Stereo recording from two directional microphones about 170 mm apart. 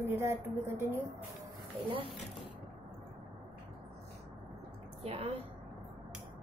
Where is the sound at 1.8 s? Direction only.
30° right (ahead or behind).